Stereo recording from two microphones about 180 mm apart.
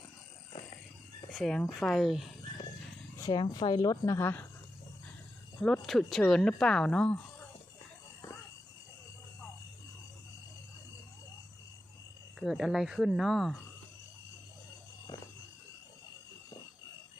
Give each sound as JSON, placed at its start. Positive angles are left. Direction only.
{"t": 1.3, "sound": "speech", "side_deg": 0}
{"t": 3.2, "sound": "speech", "side_deg": 20}
{"t": 5.6, "sound": "speech", "side_deg": 5}
{"t": 12.4, "sound": "speech", "side_deg": 0}